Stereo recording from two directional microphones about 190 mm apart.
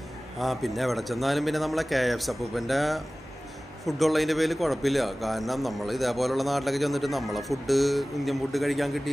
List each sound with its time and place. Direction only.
0.4 s a man's voice: centre (ahead or behind)